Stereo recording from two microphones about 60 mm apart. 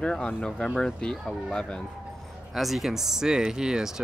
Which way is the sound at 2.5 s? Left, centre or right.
Centre.